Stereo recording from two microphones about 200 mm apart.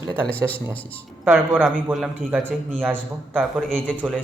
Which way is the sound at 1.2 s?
10° right (ahead or behind).